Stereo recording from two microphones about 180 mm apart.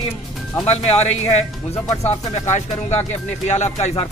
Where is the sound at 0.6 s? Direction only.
35° left (ahead or behind).